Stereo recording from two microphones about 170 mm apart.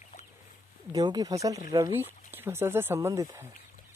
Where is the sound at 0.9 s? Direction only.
20° right (ahead or behind).